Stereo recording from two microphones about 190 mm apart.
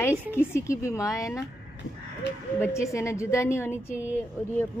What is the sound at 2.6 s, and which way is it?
A woman's voice, 15° left (ahead or behind).